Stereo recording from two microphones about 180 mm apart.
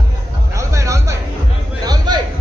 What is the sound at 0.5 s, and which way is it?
Music, 15° right (ahead or behind).